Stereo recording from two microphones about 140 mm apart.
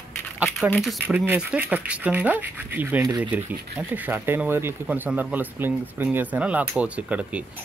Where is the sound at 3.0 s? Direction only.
30° right (ahead or behind).